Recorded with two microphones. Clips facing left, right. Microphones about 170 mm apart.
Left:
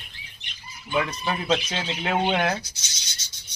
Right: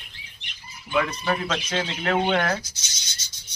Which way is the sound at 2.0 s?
15° left (ahead or behind).